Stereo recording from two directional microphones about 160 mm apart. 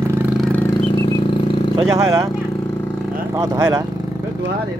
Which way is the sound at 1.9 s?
20° right (ahead or behind).